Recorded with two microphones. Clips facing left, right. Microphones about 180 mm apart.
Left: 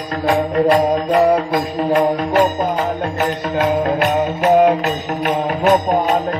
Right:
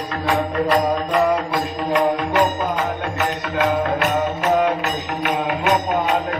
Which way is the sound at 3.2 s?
50° left (ahead or behind).